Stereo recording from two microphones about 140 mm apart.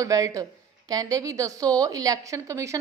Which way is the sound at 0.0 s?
25° right (ahead or behind).